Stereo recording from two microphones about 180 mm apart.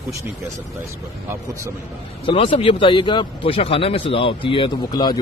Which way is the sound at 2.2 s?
30° left (ahead or behind).